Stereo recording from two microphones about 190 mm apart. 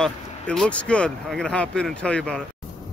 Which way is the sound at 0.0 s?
5° left (ahead or behind).